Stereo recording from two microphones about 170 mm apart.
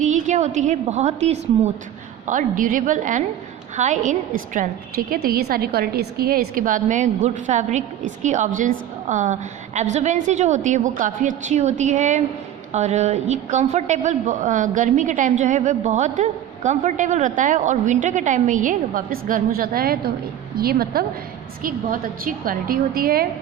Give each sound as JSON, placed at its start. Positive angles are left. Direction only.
{"t": 0.0, "sound": "a woman's voice", "side_deg": -45}
{"t": 2.2, "sound": "a woman's voice", "side_deg": -50}